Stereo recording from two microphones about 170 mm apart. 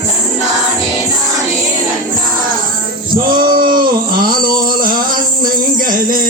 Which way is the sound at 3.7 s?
55° right (ahead or behind).